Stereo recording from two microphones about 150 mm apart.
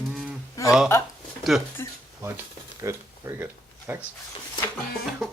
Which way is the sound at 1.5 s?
5° right (ahead or behind).